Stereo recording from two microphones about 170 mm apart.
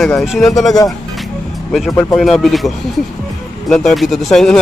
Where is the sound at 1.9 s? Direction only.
20° left (ahead or behind).